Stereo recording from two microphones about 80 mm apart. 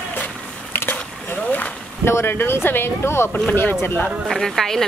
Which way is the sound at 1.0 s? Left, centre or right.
Centre.